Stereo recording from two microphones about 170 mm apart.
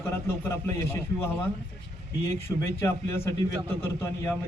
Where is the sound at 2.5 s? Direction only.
15° left (ahead or behind).